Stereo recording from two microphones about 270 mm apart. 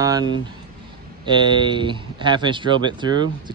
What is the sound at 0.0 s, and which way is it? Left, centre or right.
Speech, centre.